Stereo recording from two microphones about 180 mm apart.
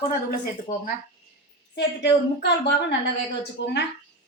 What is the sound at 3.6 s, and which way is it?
Speech, 85° left.